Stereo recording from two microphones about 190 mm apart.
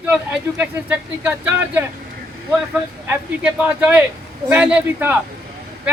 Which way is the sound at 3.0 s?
5° right (ahead or behind).